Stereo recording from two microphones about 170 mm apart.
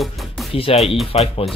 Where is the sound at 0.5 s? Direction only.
35° left (ahead or behind).